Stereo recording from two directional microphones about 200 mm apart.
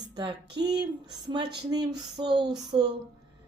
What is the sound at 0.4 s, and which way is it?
Speech, 55° right (ahead or behind).